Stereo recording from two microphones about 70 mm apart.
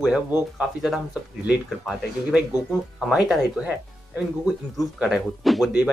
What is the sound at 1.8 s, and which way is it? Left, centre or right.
Speech, centre.